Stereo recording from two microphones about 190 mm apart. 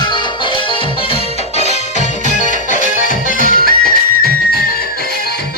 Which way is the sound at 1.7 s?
40° left (ahead or behind).